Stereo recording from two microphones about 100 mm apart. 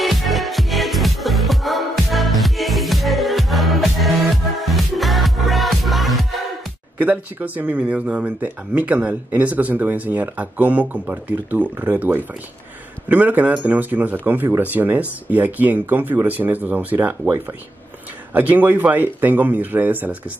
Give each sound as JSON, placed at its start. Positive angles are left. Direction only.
{"t": 0.0, "sound": "music", "side_deg": 0}
{"t": 7.0, "sound": "speech", "side_deg": -15}
{"t": 18.3, "sound": "speech", "side_deg": -15}